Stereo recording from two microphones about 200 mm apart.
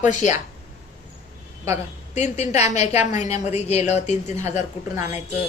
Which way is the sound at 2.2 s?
35° left (ahead or behind).